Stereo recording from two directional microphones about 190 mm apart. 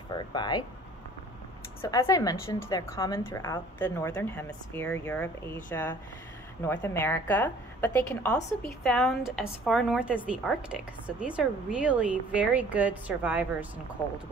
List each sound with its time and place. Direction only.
0.3 s speech: 20° left (ahead or behind)
1.8 s a woman's voice: 15° left (ahead or behind); by 13.7 s 10° right (ahead or behind)